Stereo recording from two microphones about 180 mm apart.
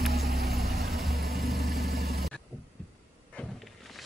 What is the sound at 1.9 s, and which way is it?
Vehicle, 60° right (ahead or behind).